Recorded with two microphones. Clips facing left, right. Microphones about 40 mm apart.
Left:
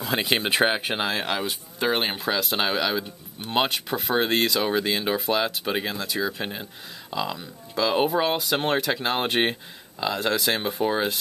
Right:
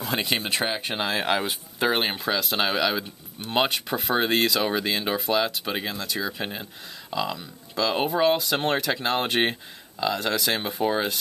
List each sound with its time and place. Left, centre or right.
0.0 s speech: centre
0.5 s speech: left
0.8 s speech: centre